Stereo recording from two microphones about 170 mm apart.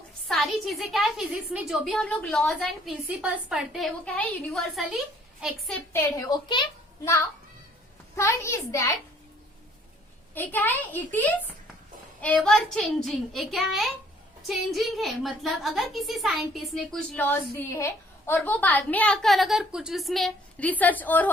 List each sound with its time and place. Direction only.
0.3 s a woman's voice: centre (ahead or behind)
5.9 s a woman's voice: 15° left (ahead or behind)
10.3 s a woman's voice: 10° left (ahead or behind)